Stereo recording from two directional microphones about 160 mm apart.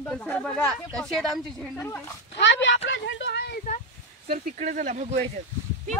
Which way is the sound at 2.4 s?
90° left.